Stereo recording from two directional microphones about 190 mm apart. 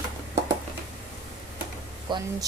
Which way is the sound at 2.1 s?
25° right (ahead or behind).